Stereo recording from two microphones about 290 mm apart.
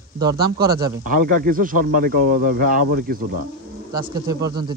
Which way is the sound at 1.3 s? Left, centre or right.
Right.